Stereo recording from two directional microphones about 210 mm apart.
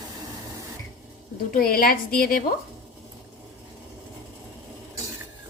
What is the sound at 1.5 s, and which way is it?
Speech, 45° left (ahead or behind).